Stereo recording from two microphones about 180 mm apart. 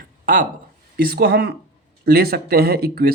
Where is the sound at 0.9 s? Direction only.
55° right (ahead or behind).